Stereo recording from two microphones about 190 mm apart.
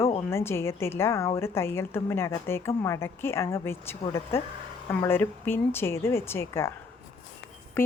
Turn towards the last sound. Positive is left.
turn(degrees=15)  # may be behind; listen again after turning